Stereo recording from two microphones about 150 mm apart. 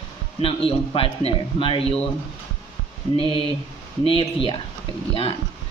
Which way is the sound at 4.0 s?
35° left (ahead or behind).